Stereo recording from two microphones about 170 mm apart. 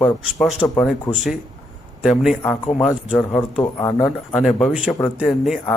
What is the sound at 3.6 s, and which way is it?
Speech, 20° left (ahead or behind).